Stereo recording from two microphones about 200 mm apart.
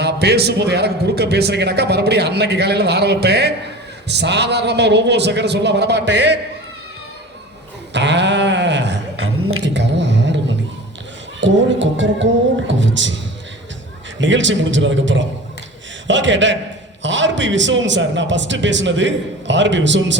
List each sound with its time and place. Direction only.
0.0 s a man's voice: 55° right (ahead or behind)
7.9 s a sound: 60° right (ahead or behind)
11.3 s music: 65° right (ahead or behind)
14.2 s a man's voice: 65° right (ahead or behind)